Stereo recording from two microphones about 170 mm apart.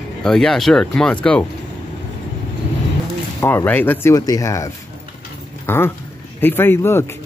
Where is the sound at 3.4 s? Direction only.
10° left (ahead or behind).